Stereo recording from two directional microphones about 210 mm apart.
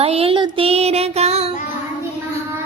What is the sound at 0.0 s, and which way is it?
Music, 30° right (ahead or behind).